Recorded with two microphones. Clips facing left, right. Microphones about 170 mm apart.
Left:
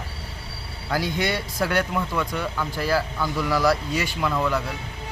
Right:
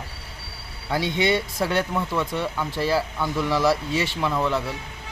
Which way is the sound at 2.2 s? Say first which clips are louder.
Right 1 dB; 25° right (ahead or behind).